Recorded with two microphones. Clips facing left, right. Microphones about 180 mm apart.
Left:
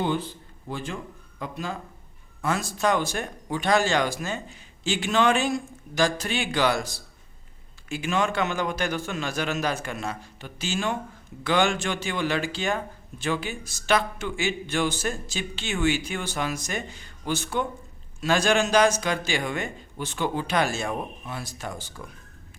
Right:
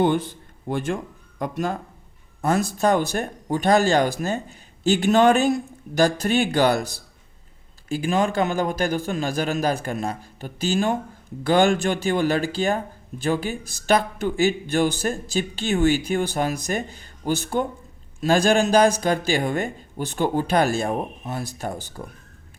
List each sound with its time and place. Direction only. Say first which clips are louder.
0.7 s speech: right 8 dB; 55° right (ahead or behind)
2.4 s speech: right 5 dB; 40° right (ahead or behind)
7.9 s speech: right 4 dB; 35° right (ahead or behind)